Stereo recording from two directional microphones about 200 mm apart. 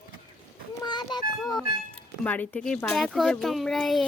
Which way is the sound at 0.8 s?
20° left (ahead or behind).